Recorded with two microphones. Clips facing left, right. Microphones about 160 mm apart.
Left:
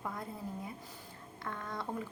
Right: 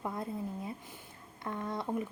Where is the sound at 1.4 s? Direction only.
20° right (ahead or behind).